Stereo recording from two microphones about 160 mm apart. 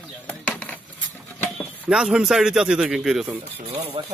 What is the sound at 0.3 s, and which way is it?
Chop, 10° left (ahead or behind).